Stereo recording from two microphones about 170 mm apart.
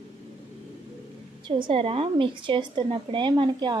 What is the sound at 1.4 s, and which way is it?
A woman's voice, 30° right (ahead or behind).